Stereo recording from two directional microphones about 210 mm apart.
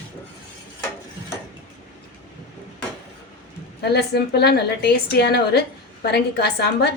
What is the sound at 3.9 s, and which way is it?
A woman's voice, 50° left (ahead or behind).